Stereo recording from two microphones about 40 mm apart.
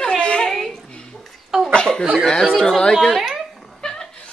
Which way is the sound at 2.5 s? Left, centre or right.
Centre.